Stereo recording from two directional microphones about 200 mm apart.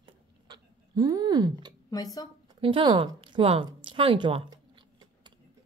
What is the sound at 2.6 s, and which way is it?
Speech, 25° right (ahead or behind).